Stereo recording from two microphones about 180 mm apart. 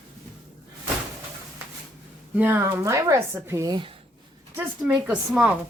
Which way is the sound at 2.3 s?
10° right (ahead or behind).